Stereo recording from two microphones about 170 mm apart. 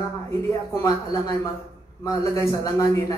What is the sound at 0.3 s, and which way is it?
A man's voice, 15° left (ahead or behind).